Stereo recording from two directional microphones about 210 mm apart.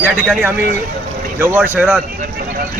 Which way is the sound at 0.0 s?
5° right (ahead or behind).